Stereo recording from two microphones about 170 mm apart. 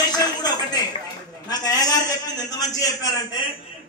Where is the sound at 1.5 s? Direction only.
20° left (ahead or behind).